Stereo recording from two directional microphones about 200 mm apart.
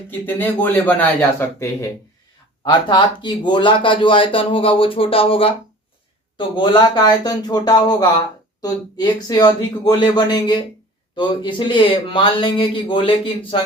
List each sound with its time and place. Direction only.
0.1 s speech: 10° left (ahead or behind)
9.2 s speech: 20° left (ahead or behind)